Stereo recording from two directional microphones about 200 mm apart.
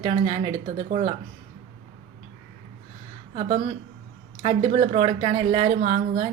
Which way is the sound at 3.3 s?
35° right (ahead or behind).